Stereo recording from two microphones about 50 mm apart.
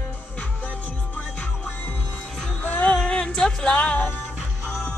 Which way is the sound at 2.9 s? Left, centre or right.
Centre.